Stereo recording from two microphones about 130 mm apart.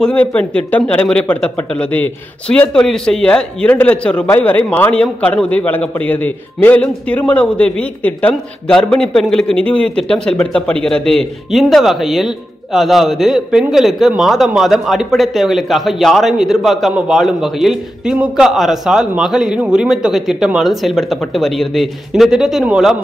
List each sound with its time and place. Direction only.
0.0 s a man's voice: 10° left (ahead or behind)